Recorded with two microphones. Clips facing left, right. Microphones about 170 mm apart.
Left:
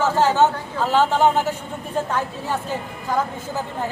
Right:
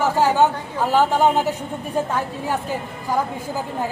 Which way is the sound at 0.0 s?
10° right (ahead or behind).